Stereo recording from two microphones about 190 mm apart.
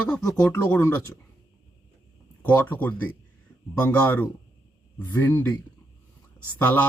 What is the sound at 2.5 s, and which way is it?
Speech, 10° left (ahead or behind).